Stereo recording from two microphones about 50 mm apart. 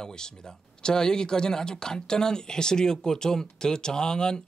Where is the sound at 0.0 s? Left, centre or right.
Centre.